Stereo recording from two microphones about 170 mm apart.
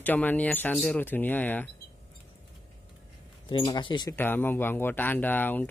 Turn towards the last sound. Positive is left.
turn(degrees=10)  # may be behind; listen again after turning